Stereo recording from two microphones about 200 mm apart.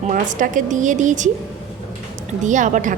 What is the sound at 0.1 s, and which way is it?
A woman's voice, 40° right (ahead or behind).